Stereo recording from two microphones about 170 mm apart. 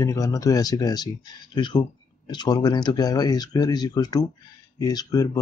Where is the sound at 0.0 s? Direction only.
20° left (ahead or behind).